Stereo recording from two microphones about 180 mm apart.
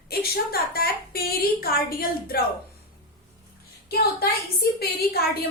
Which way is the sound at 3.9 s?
60° left (ahead or behind).